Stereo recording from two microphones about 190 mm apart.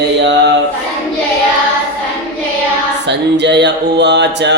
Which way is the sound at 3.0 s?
65° right (ahead or behind).